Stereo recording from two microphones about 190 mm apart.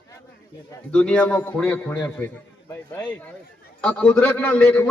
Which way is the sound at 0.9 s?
5° left (ahead or behind).